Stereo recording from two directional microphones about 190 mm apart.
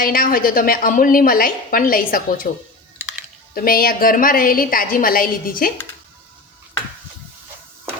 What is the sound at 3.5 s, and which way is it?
A woman's voice, 50° left (ahead or behind).